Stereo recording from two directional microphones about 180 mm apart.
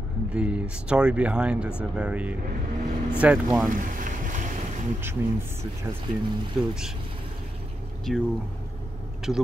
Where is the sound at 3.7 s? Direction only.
45° right (ahead or behind).